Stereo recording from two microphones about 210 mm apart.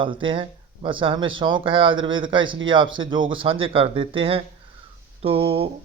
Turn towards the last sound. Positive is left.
turn(degrees=-30)  # may be behind; listen again after turning